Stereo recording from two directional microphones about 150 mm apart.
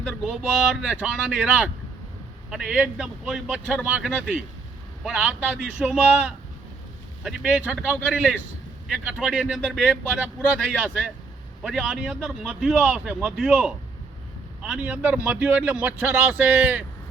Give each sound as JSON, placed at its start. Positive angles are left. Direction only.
{"t": 0.0, "sound": "speech", "side_deg": -5}
{"t": 11.6, "sound": "speech", "side_deg": 0}